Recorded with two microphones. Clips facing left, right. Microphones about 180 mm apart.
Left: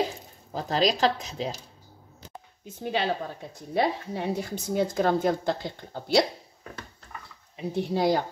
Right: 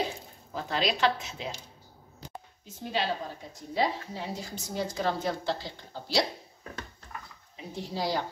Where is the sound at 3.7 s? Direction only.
60° left (ahead or behind).